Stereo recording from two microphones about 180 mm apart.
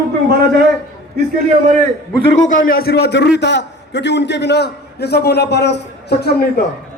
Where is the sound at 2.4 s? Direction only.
45° left (ahead or behind); by 6.5 s 65° left (ahead or behind).